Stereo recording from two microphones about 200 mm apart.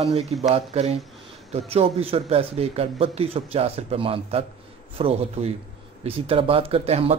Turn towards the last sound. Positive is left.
turn(degrees=-30)  # may be behind; listen again after turning